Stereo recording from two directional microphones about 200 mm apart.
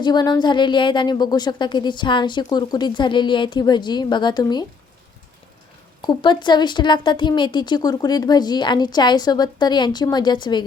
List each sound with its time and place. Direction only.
0.0 s a woman's voice: 20° left (ahead or behind)
6.1 s a woman's voice: 20° left (ahead or behind)